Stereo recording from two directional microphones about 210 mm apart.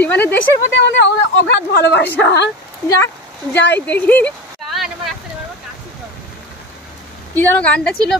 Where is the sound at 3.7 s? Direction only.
10° left (ahead or behind).